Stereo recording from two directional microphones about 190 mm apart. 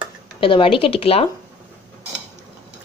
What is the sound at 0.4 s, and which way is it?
Speech, 30° left (ahead or behind).